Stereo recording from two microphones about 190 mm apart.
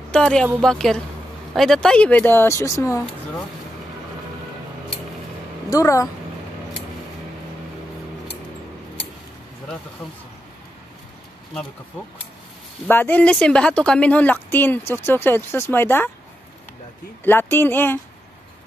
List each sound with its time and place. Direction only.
0.1 s a woman's voice: 5° left (ahead or behind)
5.7 s speech: 15° left (ahead or behind)
12.8 s speech: 10° left (ahead or behind)
17.2 s speech: 10° left (ahead or behind)